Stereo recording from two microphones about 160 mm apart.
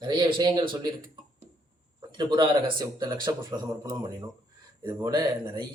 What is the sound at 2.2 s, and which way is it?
Speech, 30° right (ahead or behind).